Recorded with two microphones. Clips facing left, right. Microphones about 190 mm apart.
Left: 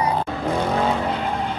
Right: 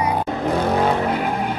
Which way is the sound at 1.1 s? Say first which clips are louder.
Right 3 dB; 10° right (ahead or behind).